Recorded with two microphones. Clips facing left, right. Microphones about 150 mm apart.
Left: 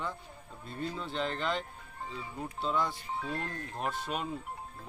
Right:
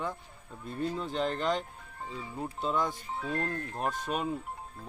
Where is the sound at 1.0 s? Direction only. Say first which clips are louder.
Right 1 dB; 40° right (ahead or behind).